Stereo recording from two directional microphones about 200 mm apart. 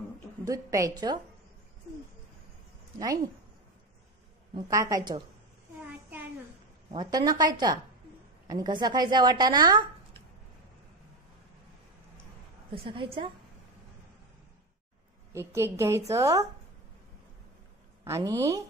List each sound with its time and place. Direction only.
0.5 s a woman's voice: 15° right (ahead or behind)
4.6 s a woman's voice: 15° right (ahead or behind)
6.9 s a woman's voice: 20° right (ahead or behind)
12.7 s a woman's voice: 25° right (ahead or behind)
15.3 s a woman's voice: 15° right (ahead or behind)
18.0 s a woman's voice: 15° right (ahead or behind)